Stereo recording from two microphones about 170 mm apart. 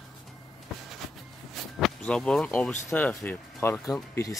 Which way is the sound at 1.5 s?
Centre (ahead or behind).